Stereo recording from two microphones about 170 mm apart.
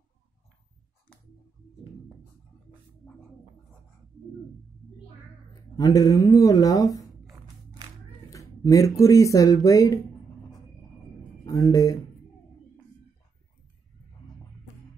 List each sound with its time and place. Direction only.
3.0 s gargling: 5° left (ahead or behind)
5.8 s speech: 20° left (ahead or behind)
8.3 s speech: 20° left (ahead or behind)
11.4 s speech: 20° left (ahead or behind)